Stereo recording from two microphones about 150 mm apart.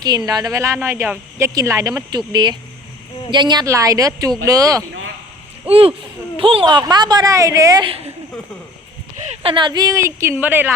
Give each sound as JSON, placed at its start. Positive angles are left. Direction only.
{"t": 0.0, "sound": "speech", "side_deg": -25}
{"t": 5.6, "sound": "speech", "side_deg": -40}
{"t": 7.9, "sound": "a woman's voice", "side_deg": -40}
{"t": 9.2, "sound": "speech", "side_deg": -45}